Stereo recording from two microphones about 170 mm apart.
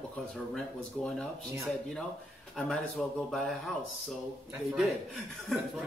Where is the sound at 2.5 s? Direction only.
Centre (ahead or behind).